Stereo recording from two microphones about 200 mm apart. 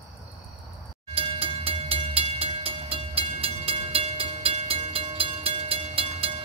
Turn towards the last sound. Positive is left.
turn(degrees=-30)  # may be behind; listen again after turning